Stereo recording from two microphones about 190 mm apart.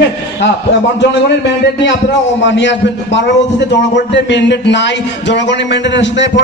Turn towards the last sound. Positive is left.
turn(degrees=70)  # may be behind; listen again after turning